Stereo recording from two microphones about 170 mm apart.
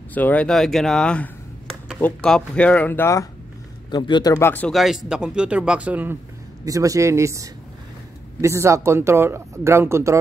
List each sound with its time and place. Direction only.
0.1 s speech: 10° left (ahead or behind)
4.7 s speech: centre (ahead or behind)
6.6 s a man's voice: 20° right (ahead or behind)